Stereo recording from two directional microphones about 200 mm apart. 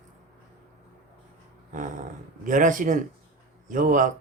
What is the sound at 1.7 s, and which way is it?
Dog, 40° right (ahead or behind).